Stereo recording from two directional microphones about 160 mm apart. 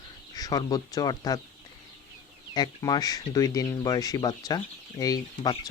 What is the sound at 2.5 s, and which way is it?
Speech, 25° left (ahead or behind).